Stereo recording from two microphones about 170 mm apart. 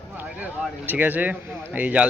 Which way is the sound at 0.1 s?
10° right (ahead or behind).